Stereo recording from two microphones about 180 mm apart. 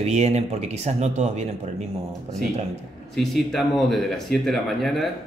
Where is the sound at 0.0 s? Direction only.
40° right (ahead or behind).